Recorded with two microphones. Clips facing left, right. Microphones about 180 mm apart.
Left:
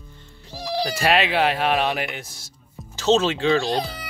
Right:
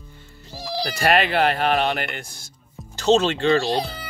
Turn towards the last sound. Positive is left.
turn(degrees=0)  # may be behind; listen again after turning